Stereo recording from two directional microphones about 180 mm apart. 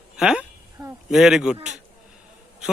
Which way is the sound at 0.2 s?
5° right (ahead or behind).